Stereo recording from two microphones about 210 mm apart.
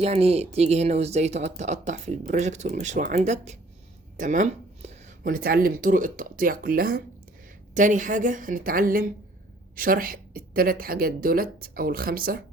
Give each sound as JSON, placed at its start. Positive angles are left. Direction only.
{"t": 0.0, "sound": "speech", "side_deg": -30}